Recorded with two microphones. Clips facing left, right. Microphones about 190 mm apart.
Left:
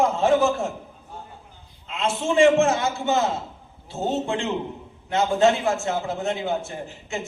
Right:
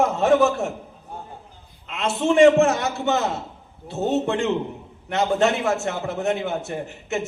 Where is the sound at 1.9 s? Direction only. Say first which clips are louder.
Right 3 dB; 65° right (ahead or behind).